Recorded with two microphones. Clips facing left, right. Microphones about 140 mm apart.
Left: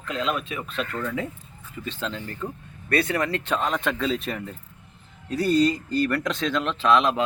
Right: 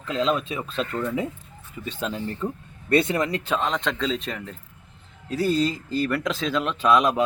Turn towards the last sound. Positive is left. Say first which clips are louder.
# right 1 dB
turn(degrees=-10)  # may be behind; listen again after turning